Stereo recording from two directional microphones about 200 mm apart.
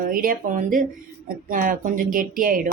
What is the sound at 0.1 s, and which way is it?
A woman's voice, 45° right (ahead or behind).